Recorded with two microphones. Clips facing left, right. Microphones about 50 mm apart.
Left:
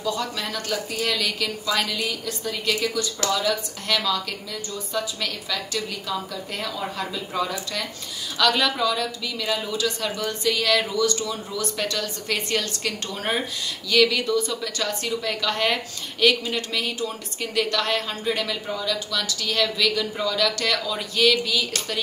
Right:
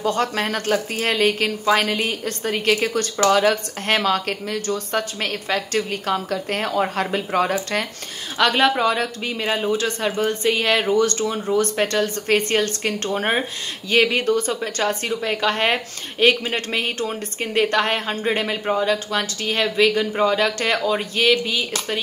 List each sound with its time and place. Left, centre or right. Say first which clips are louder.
0.0 s a woman's voice: right 6 dB; right
8.4 s a woman's voice: right 4 dB; right